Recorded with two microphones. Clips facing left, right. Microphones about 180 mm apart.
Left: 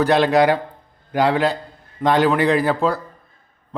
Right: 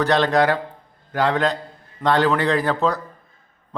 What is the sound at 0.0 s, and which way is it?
Speech, 10° left (ahead or behind).